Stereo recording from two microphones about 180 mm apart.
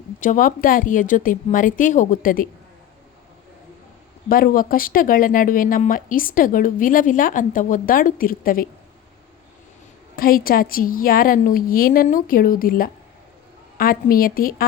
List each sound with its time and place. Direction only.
0.2 s speech: 50° left (ahead or behind)
4.3 s speech: 55° left (ahead or behind)
10.2 s speech: 55° left (ahead or behind)